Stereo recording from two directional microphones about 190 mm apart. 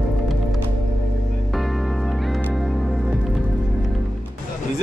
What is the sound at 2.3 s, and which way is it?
Music, centre (ahead or behind).